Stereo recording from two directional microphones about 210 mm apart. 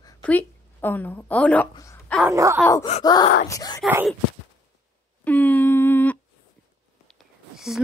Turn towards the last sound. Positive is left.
turn(degrees=0)  # may be behind; listen again after turning